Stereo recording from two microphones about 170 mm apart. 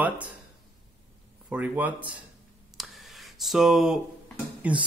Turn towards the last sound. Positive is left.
turn(degrees=-10)  # may be behind; listen again after turning